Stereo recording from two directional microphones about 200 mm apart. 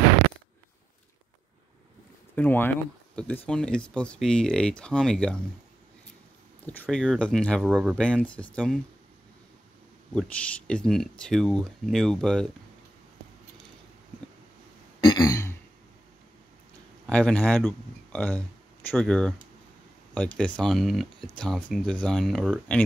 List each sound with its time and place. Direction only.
2.3 s speech: 10° left (ahead or behind)
6.6 s speech: 5° left (ahead or behind)
10.1 s speech: 5° left (ahead or behind)
15.0 s throat clearing: 20° left (ahead or behind)
17.0 s speech: 5° left (ahead or behind)